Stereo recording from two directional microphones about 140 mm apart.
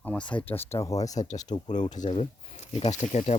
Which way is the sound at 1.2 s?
45° left (ahead or behind).